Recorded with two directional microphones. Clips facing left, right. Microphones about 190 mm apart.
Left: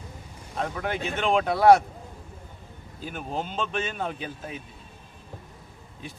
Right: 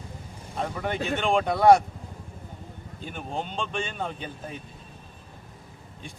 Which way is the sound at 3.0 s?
5° left (ahead or behind).